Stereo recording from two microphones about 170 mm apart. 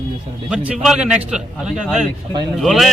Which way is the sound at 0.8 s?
5° right (ahead or behind).